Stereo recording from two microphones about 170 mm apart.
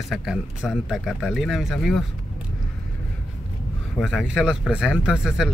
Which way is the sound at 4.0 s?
5° right (ahead or behind).